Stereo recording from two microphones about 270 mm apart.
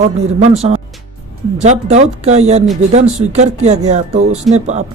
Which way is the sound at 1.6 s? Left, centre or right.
Right.